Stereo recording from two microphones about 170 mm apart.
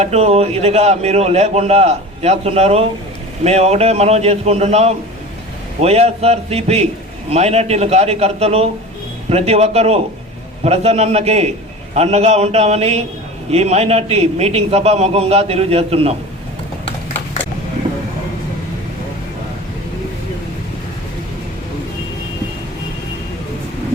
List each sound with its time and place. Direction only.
0.0 s a man's voice: 40° right (ahead or behind)